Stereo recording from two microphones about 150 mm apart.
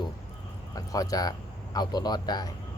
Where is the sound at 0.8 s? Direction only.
25° left (ahead or behind).